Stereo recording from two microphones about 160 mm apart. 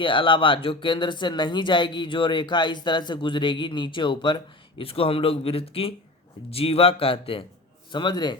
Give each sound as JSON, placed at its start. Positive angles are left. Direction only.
{"t": 0.0, "sound": "a man's voice", "side_deg": 30}